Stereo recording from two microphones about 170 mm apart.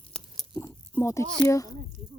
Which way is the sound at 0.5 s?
15° left (ahead or behind).